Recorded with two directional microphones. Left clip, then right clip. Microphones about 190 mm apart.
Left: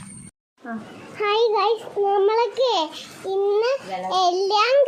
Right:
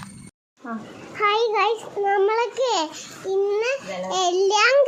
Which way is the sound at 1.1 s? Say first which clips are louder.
Even; centre (ahead or behind).